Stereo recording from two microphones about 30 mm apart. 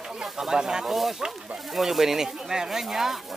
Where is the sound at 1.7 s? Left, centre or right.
Centre.